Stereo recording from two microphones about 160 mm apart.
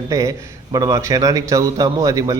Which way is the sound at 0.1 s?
20° right (ahead or behind).